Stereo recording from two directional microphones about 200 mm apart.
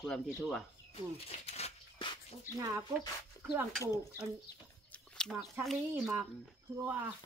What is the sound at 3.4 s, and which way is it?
Speech, 5° right (ahead or behind).